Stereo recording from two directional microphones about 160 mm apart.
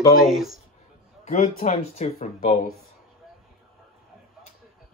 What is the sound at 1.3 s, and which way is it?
Speech, 45° left (ahead or behind).